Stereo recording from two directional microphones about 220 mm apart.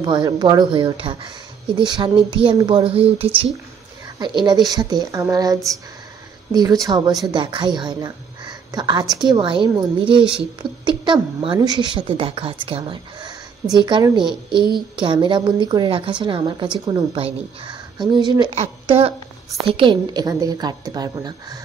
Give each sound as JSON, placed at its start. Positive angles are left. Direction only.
{"t": 0.0, "sound": "a woman's voice", "side_deg": -20}
{"t": 16.6, "sound": "a woman's voice", "side_deg": -5}
{"t": 16.9, "sound": "a woman's voice", "side_deg": -25}